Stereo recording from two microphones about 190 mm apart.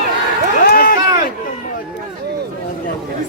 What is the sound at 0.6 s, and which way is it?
Run, 50° left (ahead or behind).